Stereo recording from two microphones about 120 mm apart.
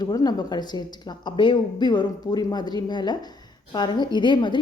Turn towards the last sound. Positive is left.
turn(degrees=40)  # may be behind; listen again after turning